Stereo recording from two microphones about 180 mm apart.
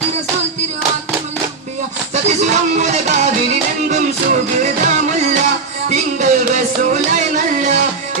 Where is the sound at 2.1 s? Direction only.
40° right (ahead or behind).